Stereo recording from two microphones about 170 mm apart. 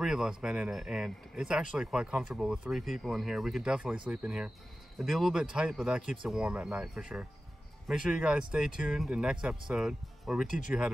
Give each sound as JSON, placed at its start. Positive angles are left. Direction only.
{"t": 0.0, "sound": "speech", "side_deg": -5}